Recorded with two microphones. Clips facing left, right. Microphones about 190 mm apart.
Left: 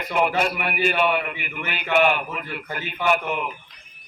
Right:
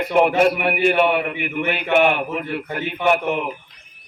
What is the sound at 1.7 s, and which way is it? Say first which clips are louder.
A man's voice: right 2 dB; 55° right (ahead or behind).